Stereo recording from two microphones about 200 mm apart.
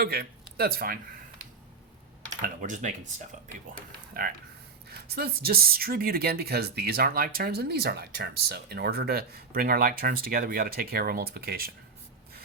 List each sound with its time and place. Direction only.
0.0 s speech: 50° right (ahead or behind)
2.4 s speech: 40° right (ahead or behind)
4.1 s speech: 45° right (ahead or behind)